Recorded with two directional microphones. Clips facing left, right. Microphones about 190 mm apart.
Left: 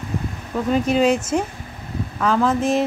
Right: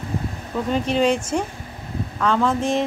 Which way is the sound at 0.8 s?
5° left (ahead or behind).